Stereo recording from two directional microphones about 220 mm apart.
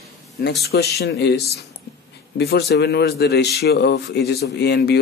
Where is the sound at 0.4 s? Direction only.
45° left (ahead or behind).